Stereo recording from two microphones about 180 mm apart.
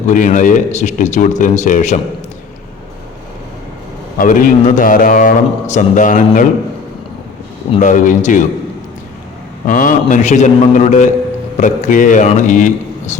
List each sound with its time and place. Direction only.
0.1 s a man's voice: 45° left (ahead or behind)
4.2 s a man's voice: 45° left (ahead or behind)
7.8 s a man's voice: 45° left (ahead or behind)
9.6 s a man's voice: 45° left (ahead or behind)